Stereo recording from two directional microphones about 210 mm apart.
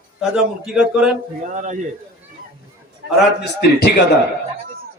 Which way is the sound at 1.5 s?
35° right (ahead or behind).